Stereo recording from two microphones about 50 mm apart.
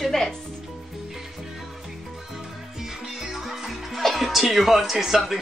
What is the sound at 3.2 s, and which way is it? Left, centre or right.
Speech, centre.